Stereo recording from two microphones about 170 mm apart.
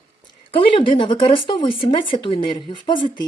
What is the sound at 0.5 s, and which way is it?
Speech, 30° left (ahead or behind).